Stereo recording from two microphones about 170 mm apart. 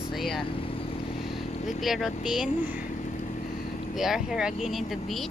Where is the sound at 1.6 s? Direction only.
Centre (ahead or behind).